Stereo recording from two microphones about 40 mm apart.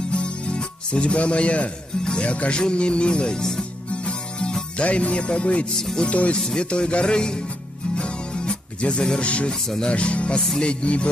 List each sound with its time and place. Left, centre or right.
0.1 s music: left
1.1 s speech: left
3.9 s music: left
4.8 s speech: left
5.8 s speech: centre
6.0 s speech: left
7.9 s music: left
9.5 s speech: centre
9.8 s speech: left